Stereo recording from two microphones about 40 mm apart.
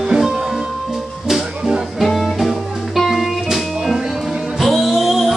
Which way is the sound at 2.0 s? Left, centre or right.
Centre.